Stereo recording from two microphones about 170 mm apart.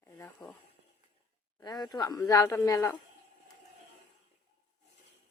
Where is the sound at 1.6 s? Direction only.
25° left (ahead or behind).